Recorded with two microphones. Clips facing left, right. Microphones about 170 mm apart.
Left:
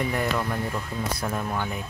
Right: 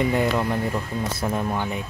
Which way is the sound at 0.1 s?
20° right (ahead or behind).